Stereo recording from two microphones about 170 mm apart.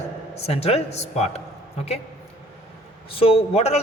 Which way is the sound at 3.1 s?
35° left (ahead or behind).